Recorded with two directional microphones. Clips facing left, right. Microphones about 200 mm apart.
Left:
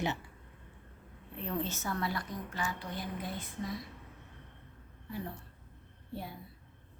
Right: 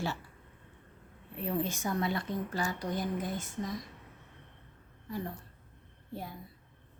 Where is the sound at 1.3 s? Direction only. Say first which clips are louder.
Right 3 dB; 10° right (ahead or behind).